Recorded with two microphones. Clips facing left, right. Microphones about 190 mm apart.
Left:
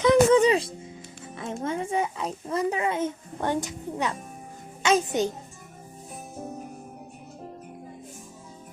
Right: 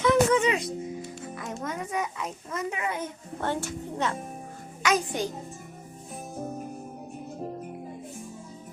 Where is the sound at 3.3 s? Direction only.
15° left (ahead or behind).